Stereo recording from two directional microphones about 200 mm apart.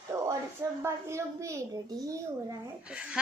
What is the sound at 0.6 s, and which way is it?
A child's voice, 15° right (ahead or behind).